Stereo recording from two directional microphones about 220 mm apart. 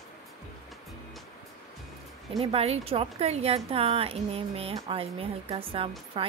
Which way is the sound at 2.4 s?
25° right (ahead or behind).